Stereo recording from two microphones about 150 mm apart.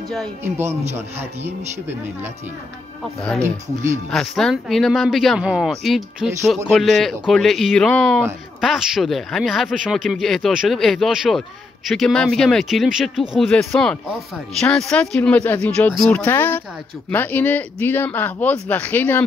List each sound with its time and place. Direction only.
0.4 s speech: 15° right (ahead or behind)
4.1 s speech: 5° left (ahead or behind)
13.5 s speech: 5° left (ahead or behind)